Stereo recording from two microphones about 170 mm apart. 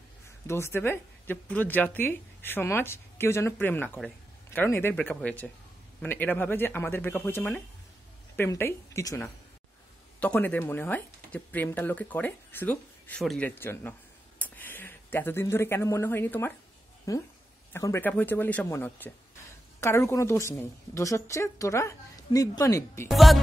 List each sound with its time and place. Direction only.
0.5 s a woman's voice: 15° left (ahead or behind)
13.2 s speech: centre (ahead or behind)
13.6 s a woman's voice: 15° left (ahead or behind)
23.0 s speech: centre (ahead or behind)